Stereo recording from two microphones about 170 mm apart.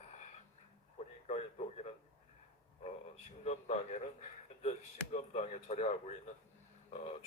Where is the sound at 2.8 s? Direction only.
40° left (ahead or behind).